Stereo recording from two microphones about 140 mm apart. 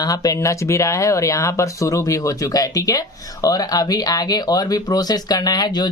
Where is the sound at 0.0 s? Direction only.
25° left (ahead or behind).